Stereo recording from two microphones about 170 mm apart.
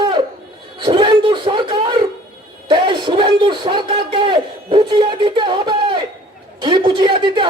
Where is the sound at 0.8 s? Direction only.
30° right (ahead or behind).